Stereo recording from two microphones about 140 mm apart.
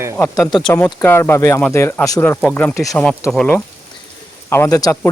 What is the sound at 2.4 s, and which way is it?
Speech, 5° left (ahead or behind).